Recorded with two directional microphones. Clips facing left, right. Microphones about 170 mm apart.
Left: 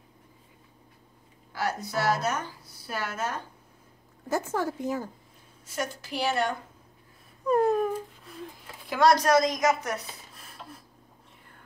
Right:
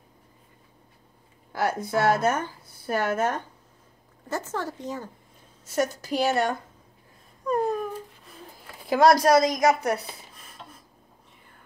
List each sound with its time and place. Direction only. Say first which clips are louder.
1.5 s a woman's voice: right 5 dB; 50° right (ahead or behind)
4.3 s speech: left 2 dB; 10° left (ahead or behind)
5.8 s a woman's voice: right 6 dB; 40° right (ahead or behind)
7.4 s a sound: left 3 dB; centre (ahead or behind)
9.2 s a woman's voice: right 3 dB; 35° right (ahead or behind)
10.3 s rub: left 1 dB; centre (ahead or behind)